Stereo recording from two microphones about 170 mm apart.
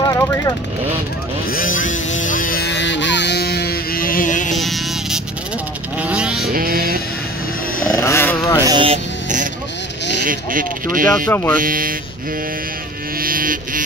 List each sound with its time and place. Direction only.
0.0 s speech: 20° left (ahead or behind)
1.5 s a sound: 55° left (ahead or behind)
4.6 s music: centre (ahead or behind)
5.9 s vehicle: 5° right (ahead or behind)
6.5 s music: 60° right (ahead or behind)
7.9 s speech: 15° left (ahead or behind)
8.4 s music: 20° left (ahead or behind)
8.6 s speech: 30° right (ahead or behind)
10.2 s speech: 55° right (ahead or behind)
11.2 s speech: 15° left (ahead or behind)
11.5 s speech: 55° right (ahead or behind)
13.2 s mantra: 55° right (ahead or behind)